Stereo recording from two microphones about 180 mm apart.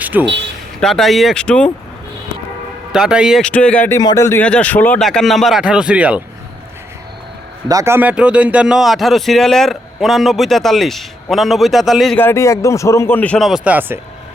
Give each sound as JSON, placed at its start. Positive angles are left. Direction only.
{"t": 0.0, "sound": "a sound", "side_deg": -10}
{"t": 0.8, "sound": "a man's voice", "side_deg": 0}
{"t": 2.9, "sound": "a man's voice", "side_deg": -5}
{"t": 3.9, "sound": "a man's voice", "side_deg": 20}
{"t": 7.7, "sound": "a man's voice", "side_deg": -15}
{"t": 12.2, "sound": "speech", "side_deg": 15}